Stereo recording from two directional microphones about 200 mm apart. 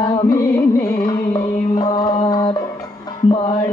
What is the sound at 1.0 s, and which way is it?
Mantra, 20° left (ahead or behind).